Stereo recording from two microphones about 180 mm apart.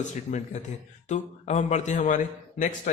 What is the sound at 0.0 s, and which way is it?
A man's voice, 40° left (ahead or behind).